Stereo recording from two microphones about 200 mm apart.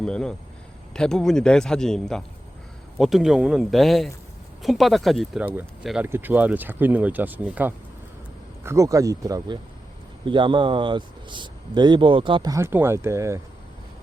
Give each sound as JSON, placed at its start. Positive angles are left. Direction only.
{"t": 0.0, "sound": "speech", "side_deg": 5}